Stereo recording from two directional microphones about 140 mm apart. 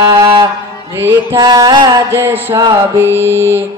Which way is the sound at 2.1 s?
15° right (ahead or behind).